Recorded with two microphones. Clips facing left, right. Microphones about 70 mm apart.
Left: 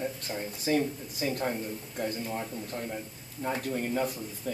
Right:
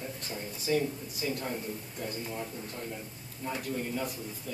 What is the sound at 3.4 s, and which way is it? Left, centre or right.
Speech, left.